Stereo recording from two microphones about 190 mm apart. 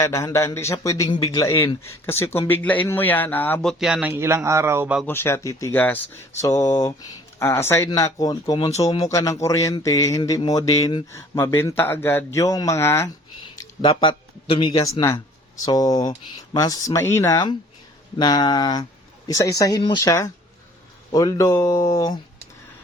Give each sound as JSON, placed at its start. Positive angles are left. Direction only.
{"t": 0.0, "sound": "speech", "side_deg": 15}
{"t": 5.0, "sound": "speech", "side_deg": 10}